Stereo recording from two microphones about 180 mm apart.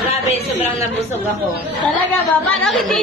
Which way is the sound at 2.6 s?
Centre (ahead or behind).